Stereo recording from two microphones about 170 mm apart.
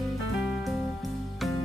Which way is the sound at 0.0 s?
Centre (ahead or behind).